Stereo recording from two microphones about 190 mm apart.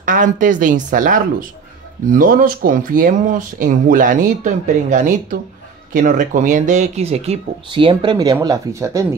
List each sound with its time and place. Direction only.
0.0 s speech: 45° right (ahead or behind); by 9.0 s 15° right (ahead or behind)